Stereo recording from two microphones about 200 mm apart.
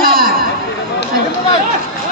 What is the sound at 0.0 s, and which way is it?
Chatter, 45° right (ahead or behind).